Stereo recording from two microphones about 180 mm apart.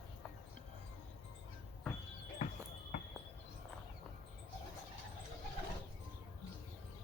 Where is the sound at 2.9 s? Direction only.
45° left (ahead or behind).